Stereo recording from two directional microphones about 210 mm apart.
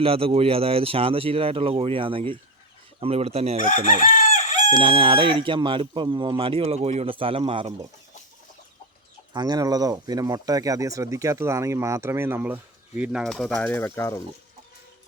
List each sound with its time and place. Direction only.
0.0 s speech: 25° right (ahead or behind)
4.0 s chicken: 40° left (ahead or behind)
4.7 s speech: 25° right (ahead or behind)
9.3 s speech: 20° right (ahead or behind); by 14.2 s 10° left (ahead or behind)